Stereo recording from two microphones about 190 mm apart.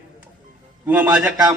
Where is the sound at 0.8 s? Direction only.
10° right (ahead or behind).